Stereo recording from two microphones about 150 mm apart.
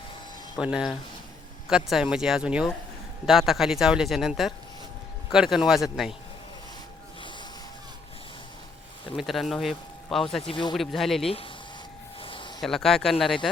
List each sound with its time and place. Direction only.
0.6 s speech: 5° right (ahead or behind)
9.1 s speech: centre (ahead or behind)
10.4 s speech: 35° left (ahead or behind)
10.8 s speech: centre (ahead or behind)
12.2 s a sound: 35° left (ahead or behind)
12.6 s speech: 5° left (ahead or behind)